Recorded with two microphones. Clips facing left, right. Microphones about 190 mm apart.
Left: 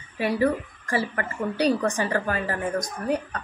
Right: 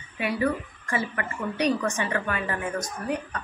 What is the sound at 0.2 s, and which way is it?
A woman's voice, 35° left (ahead or behind).